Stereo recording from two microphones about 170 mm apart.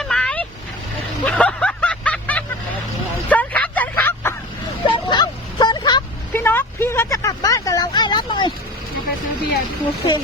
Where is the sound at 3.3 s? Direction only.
10° left (ahead or behind).